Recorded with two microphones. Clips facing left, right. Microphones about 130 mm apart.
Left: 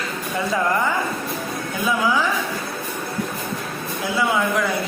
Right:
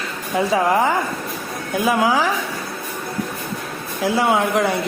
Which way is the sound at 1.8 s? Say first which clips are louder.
Right 3 dB; 85° right.